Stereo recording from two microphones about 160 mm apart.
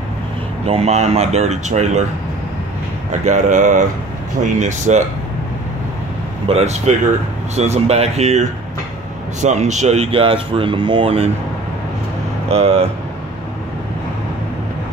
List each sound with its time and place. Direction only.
0.7 s speech: 40° right (ahead or behind)
3.3 s speech: 50° right (ahead or behind)
6.5 s speech: 45° right (ahead or behind)
12.4 s speech: 40° right (ahead or behind)